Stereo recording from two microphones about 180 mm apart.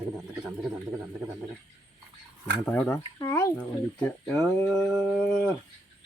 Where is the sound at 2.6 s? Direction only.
10° left (ahead or behind).